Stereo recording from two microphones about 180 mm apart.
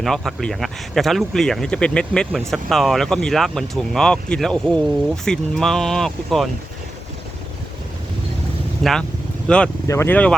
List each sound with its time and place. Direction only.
0.0 s speech: centre (ahead or behind)
8.8 s speech: centre (ahead or behind)
9.8 s speech: 15° left (ahead or behind)